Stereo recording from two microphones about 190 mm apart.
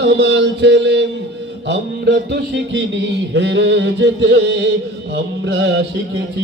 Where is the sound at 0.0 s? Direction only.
65° right (ahead or behind).